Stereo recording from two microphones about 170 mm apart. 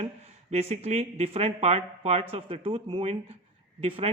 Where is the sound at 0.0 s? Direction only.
40° right (ahead or behind).